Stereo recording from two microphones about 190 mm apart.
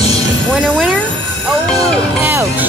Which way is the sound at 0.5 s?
Centre (ahead or behind).